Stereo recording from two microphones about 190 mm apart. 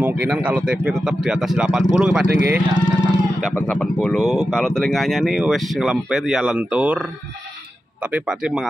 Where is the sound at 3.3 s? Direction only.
Centre (ahead or behind).